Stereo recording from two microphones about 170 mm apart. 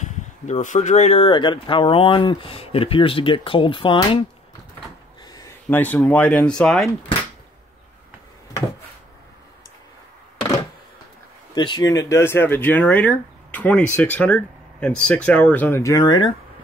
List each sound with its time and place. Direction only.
0.0 s speech: 45° left (ahead or behind); by 4.2 s 30° left (ahead or behind)
5.3 s a sound: 20° left (ahead or behind)
5.8 s speech: 10° left (ahead or behind)
11.5 s speech: 25° left (ahead or behind)